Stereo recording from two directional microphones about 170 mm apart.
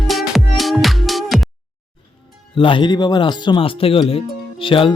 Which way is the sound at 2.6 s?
30° left (ahead or behind).